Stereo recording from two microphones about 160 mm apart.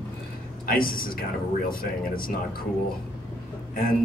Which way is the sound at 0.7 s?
65° left (ahead or behind).